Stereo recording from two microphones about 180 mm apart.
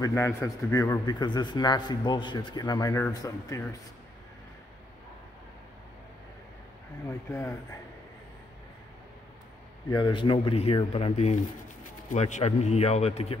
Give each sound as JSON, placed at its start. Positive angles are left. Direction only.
{"t": 0.0, "sound": "a man's voice", "side_deg": 15}
{"t": 9.8, "sound": "a man's voice", "side_deg": 25}